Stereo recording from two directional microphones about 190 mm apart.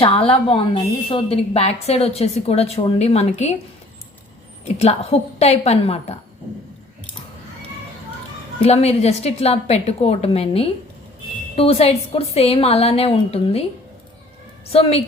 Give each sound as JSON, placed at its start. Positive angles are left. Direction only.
{"t": 0.0, "sound": "a woman's voice", "side_deg": 30}
{"t": 4.8, "sound": "a woman's voice", "side_deg": 35}
{"t": 8.6, "sound": "a woman's voice", "side_deg": 30}
{"t": 14.7, "sound": "a woman's voice", "side_deg": 30}